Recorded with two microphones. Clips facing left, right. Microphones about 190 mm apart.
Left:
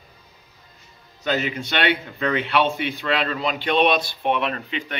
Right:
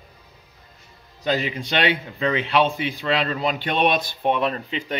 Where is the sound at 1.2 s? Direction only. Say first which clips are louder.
Even; 35° right (ahead or behind).